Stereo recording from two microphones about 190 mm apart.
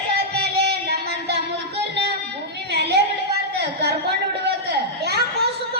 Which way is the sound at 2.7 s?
60° right (ahead or behind).